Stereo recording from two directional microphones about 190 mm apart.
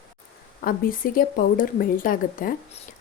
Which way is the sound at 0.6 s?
50° left (ahead or behind).